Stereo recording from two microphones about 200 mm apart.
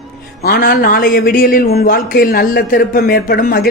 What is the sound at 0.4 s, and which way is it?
A man's voice, 45° left (ahead or behind).